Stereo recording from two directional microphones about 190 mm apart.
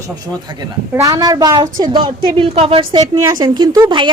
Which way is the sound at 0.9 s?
15° right (ahead or behind).